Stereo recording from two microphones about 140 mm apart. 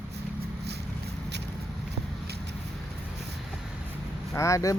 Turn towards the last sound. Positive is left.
turn(degrees=20)  # may be behind; listen again after turning